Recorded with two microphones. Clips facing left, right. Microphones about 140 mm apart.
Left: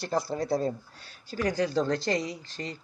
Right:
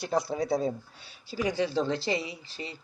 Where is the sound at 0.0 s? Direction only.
Centre (ahead or behind).